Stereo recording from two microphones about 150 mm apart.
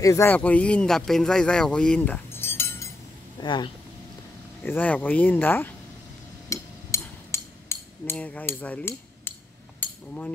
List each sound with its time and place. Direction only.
0.0 s speech: 20° left (ahead or behind)
0.3 s speech: 10° left (ahead or behind)
3.3 s speech: 30° left (ahead or behind)
4.6 s speech: 10° left (ahead or behind)
6.5 s a sound: 20° left (ahead or behind)
9.8 s cutlery: 10° left (ahead or behind)